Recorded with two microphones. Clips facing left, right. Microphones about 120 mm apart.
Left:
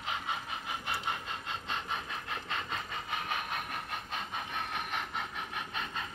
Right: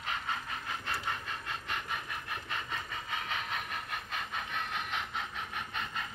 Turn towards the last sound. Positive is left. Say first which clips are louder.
# even
turn(degrees=55)  # may be behind; listen again after turning